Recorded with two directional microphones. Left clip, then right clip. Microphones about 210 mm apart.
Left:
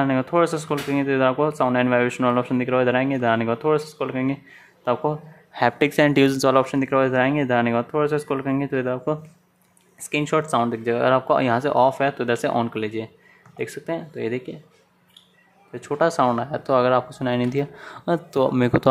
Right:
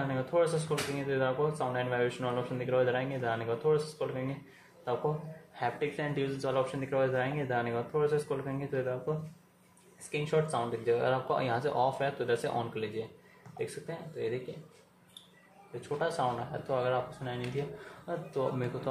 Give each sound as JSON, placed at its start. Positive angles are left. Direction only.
{"t": 0.1, "sound": "speech", "side_deg": 40}
{"t": 5.5, "sound": "speech", "side_deg": 50}
{"t": 10.1, "sound": "speech", "side_deg": 45}
{"t": 16.0, "sound": "speech", "side_deg": 50}